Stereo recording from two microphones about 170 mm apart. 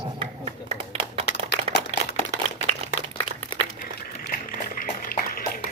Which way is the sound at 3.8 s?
55° left (ahead or behind).